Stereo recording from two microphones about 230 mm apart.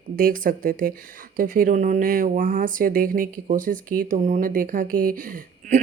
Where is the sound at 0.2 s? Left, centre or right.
Right.